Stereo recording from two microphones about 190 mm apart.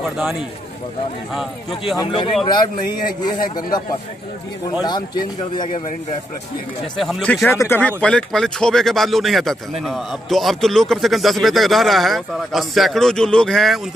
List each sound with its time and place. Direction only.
0.0 s speech: centre (ahead or behind)
2.0 s a man's voice: 20° left (ahead or behind)
2.9 s a man's voice: 50° left (ahead or behind)
3.4 s a man's voice: 20° left (ahead or behind)
4.8 s a man's voice: 20° left (ahead or behind)
7.0 s speech: centre (ahead or behind)